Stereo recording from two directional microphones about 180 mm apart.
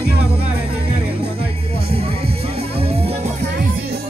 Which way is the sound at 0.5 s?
65° right (ahead or behind).